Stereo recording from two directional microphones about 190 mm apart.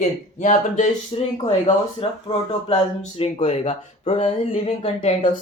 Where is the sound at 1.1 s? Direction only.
30° left (ahead or behind).